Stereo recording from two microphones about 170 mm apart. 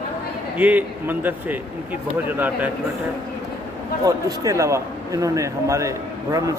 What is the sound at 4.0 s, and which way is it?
A man's voice, 20° right (ahead or behind).